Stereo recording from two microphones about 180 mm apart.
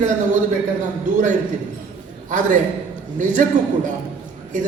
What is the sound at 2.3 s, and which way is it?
A man's voice, 45° right (ahead or behind).